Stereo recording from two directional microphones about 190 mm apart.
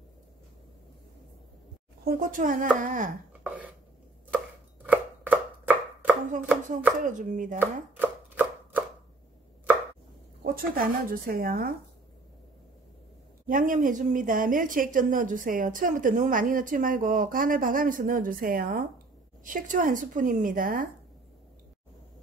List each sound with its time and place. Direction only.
2.0 s a woman's voice: 50° right (ahead or behind)
4.8 s chopping: 10° right (ahead or behind)
7.1 s a woman's voice: 40° right (ahead or behind)
7.5 s chopping: 10° right (ahead or behind)
10.4 s a woman's voice: 50° right (ahead or behind)
13.5 s a woman's voice: 45° right (ahead or behind)